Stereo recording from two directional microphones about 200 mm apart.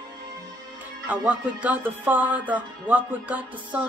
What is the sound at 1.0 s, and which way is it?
Speech, 5° right (ahead or behind).